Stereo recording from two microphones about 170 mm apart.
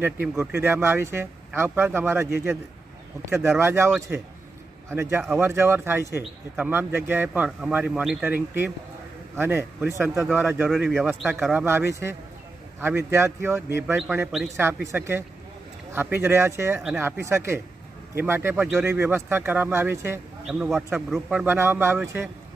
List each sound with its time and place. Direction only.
0.0 s a man's voice: 10° right (ahead or behind)
10.2 s speech: centre (ahead or behind)
12.8 s speech: 15° right (ahead or behind)
14.1 s speech: 5° right (ahead or behind)
20.4 s speech: 5° right (ahead or behind)